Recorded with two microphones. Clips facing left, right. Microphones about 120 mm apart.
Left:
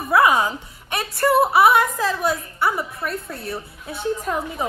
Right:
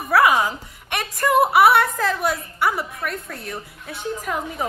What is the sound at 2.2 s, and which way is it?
A woman's voice, 25° left (ahead or behind).